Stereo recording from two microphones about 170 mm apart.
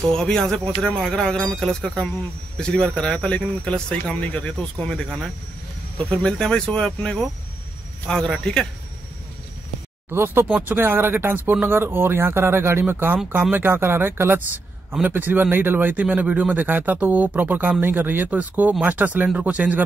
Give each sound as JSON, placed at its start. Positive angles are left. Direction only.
{"t": 0.1, "sound": "speech", "side_deg": 5}
{"t": 10.1, "sound": "speech", "side_deg": -10}